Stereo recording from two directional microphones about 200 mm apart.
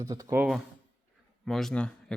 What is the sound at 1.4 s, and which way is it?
Speech, centre (ahead or behind).